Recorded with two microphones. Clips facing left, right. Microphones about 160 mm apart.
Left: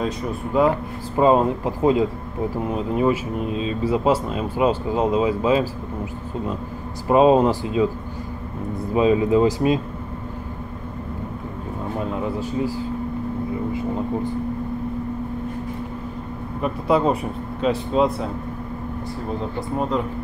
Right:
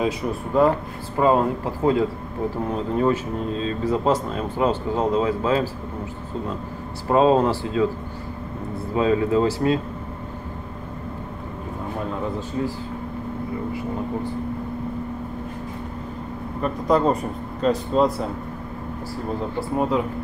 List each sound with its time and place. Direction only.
0.0 s speech: centre (ahead or behind)
1.1 s speech: 20° left (ahead or behind)
7.1 s speech: 15° left (ahead or behind)
8.9 s speech: 20° left (ahead or behind)
16.6 s speech: 5° left (ahead or behind)
19.7 s speech: 5° right (ahead or behind)